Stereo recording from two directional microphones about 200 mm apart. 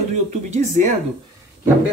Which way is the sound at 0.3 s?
35° right (ahead or behind).